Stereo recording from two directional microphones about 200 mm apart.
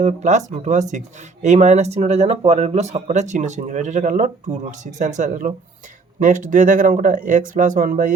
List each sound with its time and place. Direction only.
0.0 s speech: 35° right (ahead or behind)